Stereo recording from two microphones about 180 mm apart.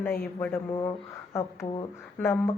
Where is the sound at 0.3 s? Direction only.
15° left (ahead or behind).